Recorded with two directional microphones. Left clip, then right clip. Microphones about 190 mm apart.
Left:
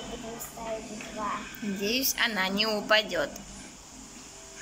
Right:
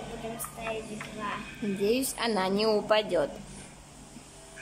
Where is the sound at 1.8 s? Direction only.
20° right (ahead or behind).